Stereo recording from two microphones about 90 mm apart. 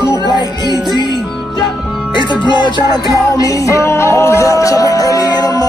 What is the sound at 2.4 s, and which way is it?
Music, 55° left (ahead or behind).